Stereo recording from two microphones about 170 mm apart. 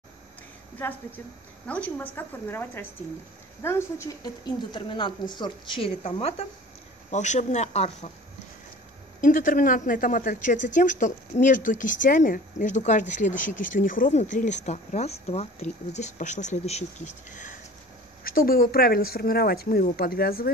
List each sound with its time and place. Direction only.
0.7 s a woman's voice: 10° left (ahead or behind); by 8.1 s 40° left (ahead or behind)
9.2 s speech: 55° left (ahead or behind)
18.2 s a woman's voice: 60° left (ahead or behind)